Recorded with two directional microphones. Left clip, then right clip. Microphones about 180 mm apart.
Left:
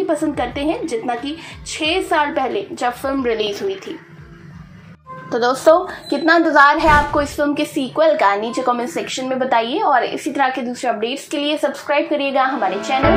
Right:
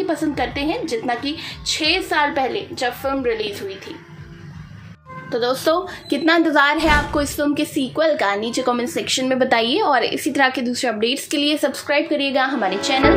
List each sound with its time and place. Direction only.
0.0 s a woman's voice: 10° right (ahead or behind)
5.3 s speech: 5° right (ahead or behind)
6.0 s a woman's voice: 40° right (ahead or behind)
9.1 s a woman's voice: 50° right (ahead or behind)